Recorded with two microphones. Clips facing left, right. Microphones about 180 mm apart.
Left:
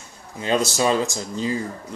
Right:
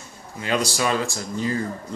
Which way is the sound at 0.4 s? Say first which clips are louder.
Left 3 dB; 25° left (ahead or behind).